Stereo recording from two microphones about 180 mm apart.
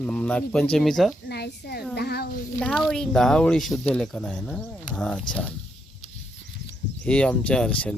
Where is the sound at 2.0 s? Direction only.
60° left (ahead or behind).